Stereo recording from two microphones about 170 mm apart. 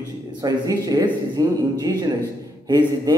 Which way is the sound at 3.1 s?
20° right (ahead or behind).